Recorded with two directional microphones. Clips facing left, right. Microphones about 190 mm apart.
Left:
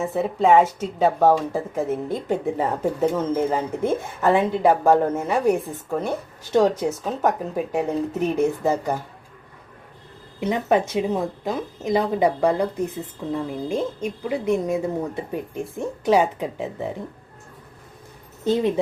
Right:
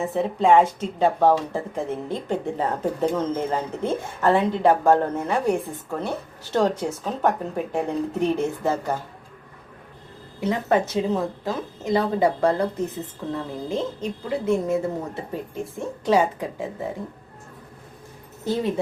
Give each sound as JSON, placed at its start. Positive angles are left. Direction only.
{"t": 0.0, "sound": "speech", "side_deg": 5}
{"t": 10.4, "sound": "speech", "side_deg": 20}
{"t": 18.4, "sound": "speech", "side_deg": 20}